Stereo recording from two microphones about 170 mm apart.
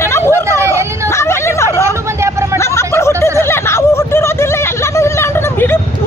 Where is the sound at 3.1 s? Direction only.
20° right (ahead or behind).